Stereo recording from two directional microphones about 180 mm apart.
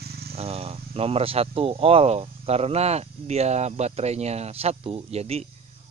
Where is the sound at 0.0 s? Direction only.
60° right (ahead or behind).